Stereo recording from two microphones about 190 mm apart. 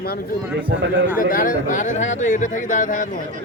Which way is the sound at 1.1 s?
45° left (ahead or behind).